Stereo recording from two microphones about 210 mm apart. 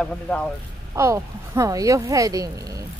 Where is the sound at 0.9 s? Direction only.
15° right (ahead or behind).